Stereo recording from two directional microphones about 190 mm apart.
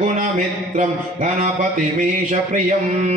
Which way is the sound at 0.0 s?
40° right (ahead or behind).